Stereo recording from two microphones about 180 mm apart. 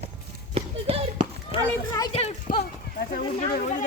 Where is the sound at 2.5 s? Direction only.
50° left (ahead or behind).